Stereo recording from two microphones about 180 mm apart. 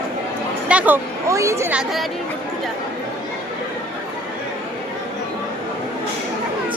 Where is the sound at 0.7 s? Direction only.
5° right (ahead or behind).